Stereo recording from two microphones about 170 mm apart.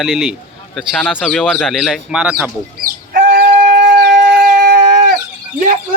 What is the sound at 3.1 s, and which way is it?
Shofar, 60° right (ahead or behind).